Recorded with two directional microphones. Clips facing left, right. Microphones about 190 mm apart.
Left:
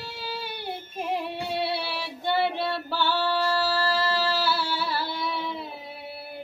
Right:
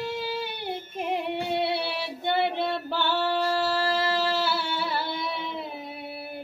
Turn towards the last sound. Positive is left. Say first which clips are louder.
# left 1 dB
turn(degrees=-20)  # may be behind; listen again after turning